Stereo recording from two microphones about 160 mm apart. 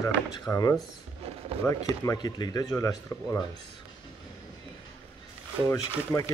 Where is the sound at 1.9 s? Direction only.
20° left (ahead or behind).